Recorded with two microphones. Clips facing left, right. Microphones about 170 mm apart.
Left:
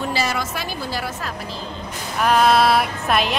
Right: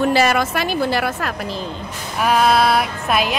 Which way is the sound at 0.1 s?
55° right (ahead or behind).